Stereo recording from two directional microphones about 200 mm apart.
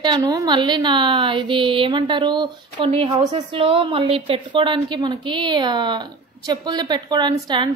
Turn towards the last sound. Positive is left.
turn(degrees=-25)  # may be behind; listen again after turning